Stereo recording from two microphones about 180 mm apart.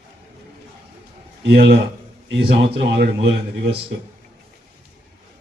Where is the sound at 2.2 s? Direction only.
80° right.